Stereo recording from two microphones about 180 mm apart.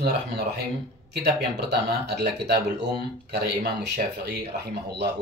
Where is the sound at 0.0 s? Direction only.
65° right (ahead or behind).